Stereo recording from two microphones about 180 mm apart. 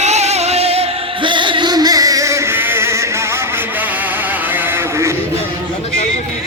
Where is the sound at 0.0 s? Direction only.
40° right (ahead or behind); by 5.1 s 15° right (ahead or behind).